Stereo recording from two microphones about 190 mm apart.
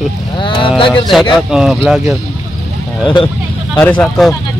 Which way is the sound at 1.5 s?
Centre (ahead or behind).